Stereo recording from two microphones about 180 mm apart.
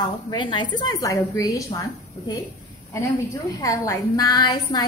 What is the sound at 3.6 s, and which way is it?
A woman's voice, 20° left (ahead or behind).